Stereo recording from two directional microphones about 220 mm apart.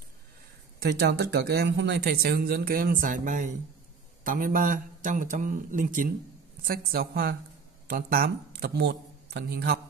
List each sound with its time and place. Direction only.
0.7 s speech: 50° right (ahead or behind)